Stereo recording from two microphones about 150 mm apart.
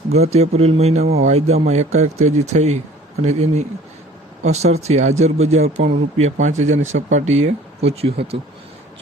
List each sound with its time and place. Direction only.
0.1 s a man's voice: 45° right (ahead or behind)